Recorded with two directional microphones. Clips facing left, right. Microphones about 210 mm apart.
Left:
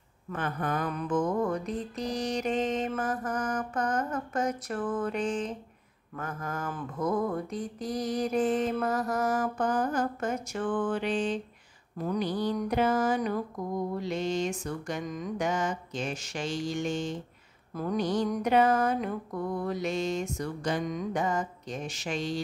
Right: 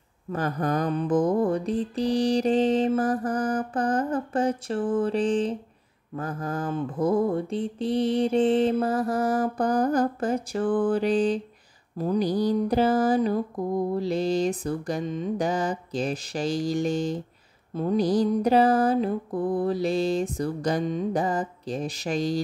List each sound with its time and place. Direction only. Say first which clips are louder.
0.3 s mantra: right 5 dB; 40° right (ahead or behind)